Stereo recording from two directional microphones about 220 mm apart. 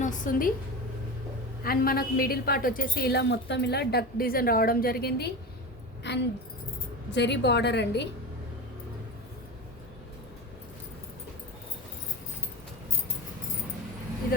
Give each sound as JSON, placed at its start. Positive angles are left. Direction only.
{"t": 0.0, "sound": "a woman's voice", "side_deg": 40}
{"t": 1.6, "sound": "a woman's voice", "side_deg": 40}